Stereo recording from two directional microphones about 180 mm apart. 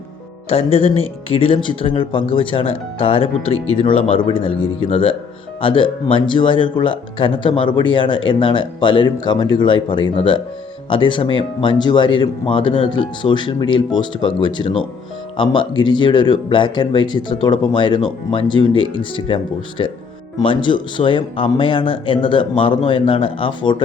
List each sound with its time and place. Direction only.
0.4 s speech: 30° left (ahead or behind)